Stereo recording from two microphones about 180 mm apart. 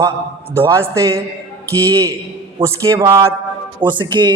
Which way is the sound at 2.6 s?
15° right (ahead or behind).